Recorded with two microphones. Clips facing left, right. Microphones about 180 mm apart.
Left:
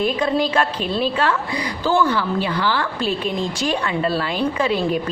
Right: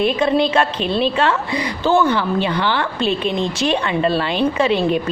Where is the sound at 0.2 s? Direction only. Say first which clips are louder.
Right 3 dB; 25° right (ahead or behind).